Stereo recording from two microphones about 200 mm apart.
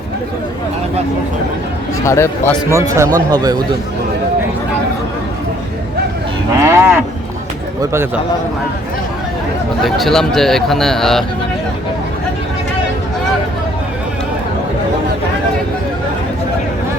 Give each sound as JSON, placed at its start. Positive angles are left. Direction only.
{"t": 2.0, "sound": "speech", "side_deg": 15}
{"t": 2.6, "sound": "a man's voice", "side_deg": -15}
{"t": 6.6, "sound": "speech", "side_deg": -15}
{"t": 9.8, "sound": "speech", "side_deg": 0}